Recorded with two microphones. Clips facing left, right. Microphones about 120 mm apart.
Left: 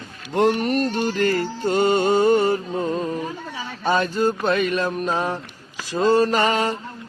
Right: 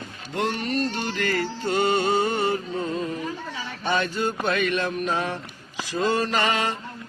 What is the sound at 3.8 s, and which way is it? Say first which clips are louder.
Music: left 5 dB; 40° left (ahead or behind).